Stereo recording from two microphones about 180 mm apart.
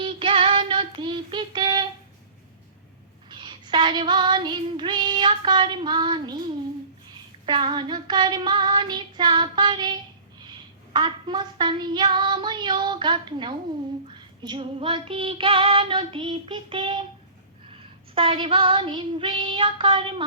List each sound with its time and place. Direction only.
0.0 s child singing: 30° right (ahead or behind)
3.2 s child singing: 25° right (ahead or behind)
7.4 s female singing: 25° right (ahead or behind)